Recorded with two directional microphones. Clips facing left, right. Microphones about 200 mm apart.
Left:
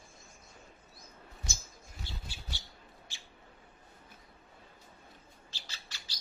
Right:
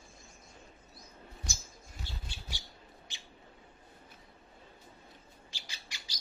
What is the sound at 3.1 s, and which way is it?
Bird, 20° right (ahead or behind).